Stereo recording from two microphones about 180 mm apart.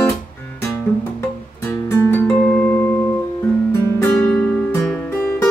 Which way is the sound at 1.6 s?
15° left (ahead or behind).